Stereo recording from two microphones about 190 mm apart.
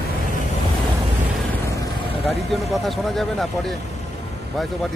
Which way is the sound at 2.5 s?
Centre (ahead or behind).